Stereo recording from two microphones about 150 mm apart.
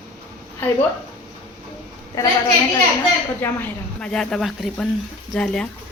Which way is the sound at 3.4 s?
15° left (ahead or behind).